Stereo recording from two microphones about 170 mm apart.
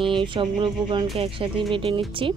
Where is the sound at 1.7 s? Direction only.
30° right (ahead or behind).